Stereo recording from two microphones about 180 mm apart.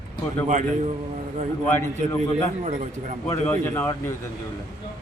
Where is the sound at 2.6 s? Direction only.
40° right (ahead or behind).